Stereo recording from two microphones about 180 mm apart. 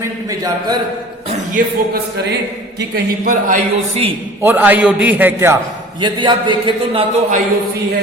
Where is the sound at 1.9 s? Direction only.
65° right (ahead or behind).